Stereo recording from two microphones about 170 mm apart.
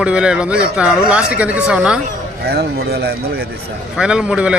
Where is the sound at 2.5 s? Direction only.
65° right (ahead or behind).